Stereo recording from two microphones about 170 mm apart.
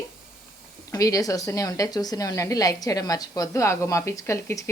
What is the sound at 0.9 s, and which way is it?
A woman's voice, 20° left (ahead or behind).